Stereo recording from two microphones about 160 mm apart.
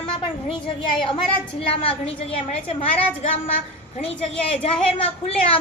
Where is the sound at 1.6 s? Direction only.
35° left (ahead or behind).